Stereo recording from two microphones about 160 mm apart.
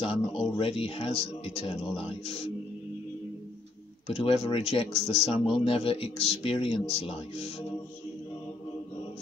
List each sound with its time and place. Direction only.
0.0 s speech: 35° left (ahead or behind)
4.1 s speech: 35° left (ahead or behind)